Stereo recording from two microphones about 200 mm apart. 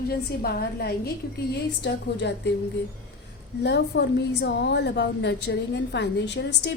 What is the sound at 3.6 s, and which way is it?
A woman's voice, 60° left (ahead or behind).